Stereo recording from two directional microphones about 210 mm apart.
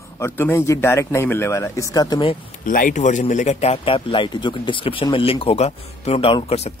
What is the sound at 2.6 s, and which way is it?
Speech, 40° left (ahead or behind).